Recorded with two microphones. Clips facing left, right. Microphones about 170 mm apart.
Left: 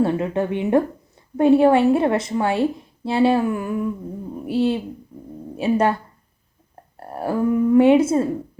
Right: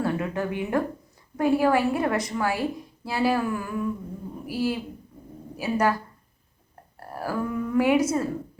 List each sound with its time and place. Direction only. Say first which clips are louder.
0.0 s a woman's voice: left 6 dB; 25° left (ahead or behind)